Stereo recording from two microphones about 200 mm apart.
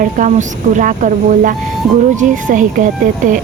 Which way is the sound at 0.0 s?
40° right (ahead or behind).